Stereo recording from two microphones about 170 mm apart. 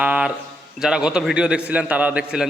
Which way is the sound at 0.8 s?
5° right (ahead or behind).